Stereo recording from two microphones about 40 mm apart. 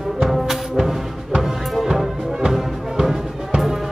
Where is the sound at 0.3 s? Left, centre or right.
Centre.